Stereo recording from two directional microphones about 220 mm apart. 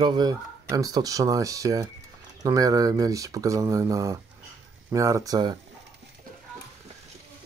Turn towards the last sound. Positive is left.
turn(degrees=-15)  # may be behind; listen again after turning